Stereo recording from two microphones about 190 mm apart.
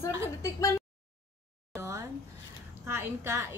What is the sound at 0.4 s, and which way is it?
Speech, 15° left (ahead or behind).